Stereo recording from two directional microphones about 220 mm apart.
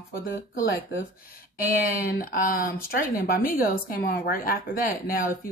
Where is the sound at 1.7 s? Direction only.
40° left (ahead or behind).